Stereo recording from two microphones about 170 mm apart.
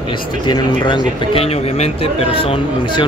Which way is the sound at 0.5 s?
25° left (ahead or behind).